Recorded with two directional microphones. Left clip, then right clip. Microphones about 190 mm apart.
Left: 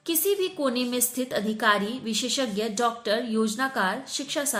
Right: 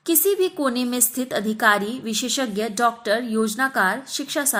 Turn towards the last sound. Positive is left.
turn(degrees=-30)  # may be behind; listen again after turning